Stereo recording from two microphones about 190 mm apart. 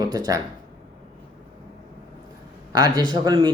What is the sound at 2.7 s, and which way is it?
Speech, 20° right (ahead or behind).